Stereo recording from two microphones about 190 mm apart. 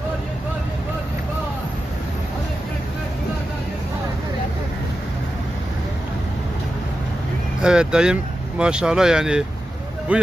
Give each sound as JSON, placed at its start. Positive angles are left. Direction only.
{"t": 7.6, "sound": "speech", "side_deg": -5}